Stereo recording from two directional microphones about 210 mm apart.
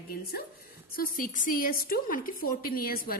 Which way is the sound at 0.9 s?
40° left (ahead or behind).